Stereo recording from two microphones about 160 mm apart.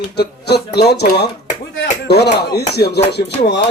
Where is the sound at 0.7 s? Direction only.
90° left.